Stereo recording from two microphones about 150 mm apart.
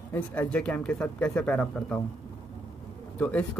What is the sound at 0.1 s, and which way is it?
Speech, 10° left (ahead or behind).